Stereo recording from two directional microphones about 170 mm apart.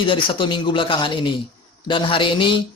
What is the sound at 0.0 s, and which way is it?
Speech, 30° left (ahead or behind).